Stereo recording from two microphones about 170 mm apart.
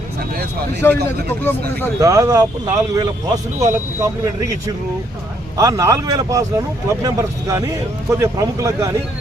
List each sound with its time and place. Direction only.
0.8 s speech: 15° left (ahead or behind)
2.0 s speech: 20° right (ahead or behind)